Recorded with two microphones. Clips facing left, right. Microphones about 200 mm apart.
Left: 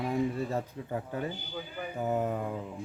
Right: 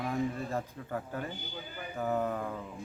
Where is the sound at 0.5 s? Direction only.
20° left (ahead or behind).